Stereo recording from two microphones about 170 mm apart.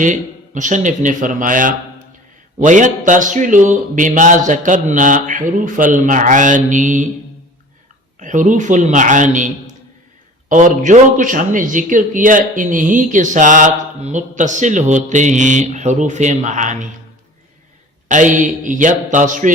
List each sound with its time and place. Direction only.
0.0 s a man's voice: 50° right (ahead or behind)
8.2 s a man's voice: 50° right (ahead or behind)
18.1 s a man's voice: 45° right (ahead or behind)